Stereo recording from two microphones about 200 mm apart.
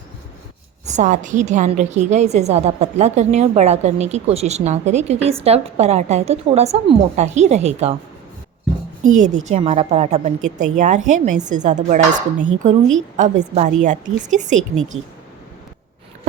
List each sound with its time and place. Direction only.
0.9 s a woman's voice: 40° right (ahead or behind)
9.1 s a woman's voice: 35° right (ahead or behind)